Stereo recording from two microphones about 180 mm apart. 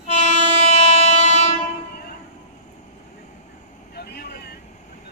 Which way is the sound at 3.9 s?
60° left (ahead or behind).